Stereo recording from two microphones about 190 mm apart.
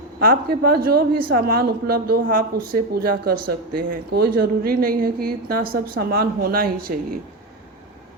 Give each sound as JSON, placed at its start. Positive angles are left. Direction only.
{"t": 0.2, "sound": "a woman's voice", "side_deg": -50}